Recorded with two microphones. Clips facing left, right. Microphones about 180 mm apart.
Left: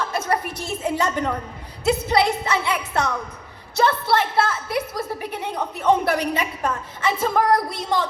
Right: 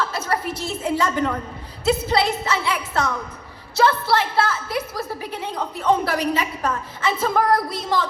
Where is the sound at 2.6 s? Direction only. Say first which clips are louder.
Even; 20° left (ahead or behind).